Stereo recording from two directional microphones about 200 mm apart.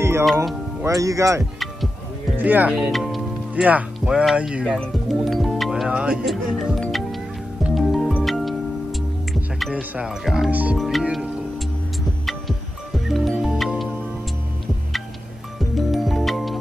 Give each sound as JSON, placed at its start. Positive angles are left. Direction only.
{"t": 0.8, "sound": "speech", "side_deg": -15}
{"t": 7.6, "sound": "music", "side_deg": 0}
{"t": 9.3, "sound": "speech", "side_deg": 0}
{"t": 13.1, "sound": "music", "side_deg": 0}
{"t": 15.7, "sound": "music", "side_deg": 0}